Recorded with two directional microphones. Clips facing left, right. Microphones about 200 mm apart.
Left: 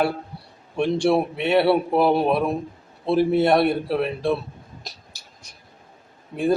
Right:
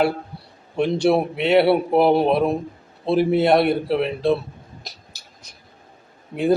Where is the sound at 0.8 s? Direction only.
20° right (ahead or behind).